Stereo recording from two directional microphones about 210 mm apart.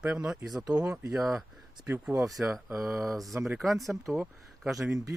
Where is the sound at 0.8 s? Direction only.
5° right (ahead or behind).